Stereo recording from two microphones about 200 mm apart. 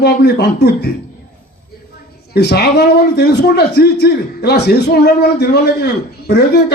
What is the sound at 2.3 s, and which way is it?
A man's voice, 55° left (ahead or behind).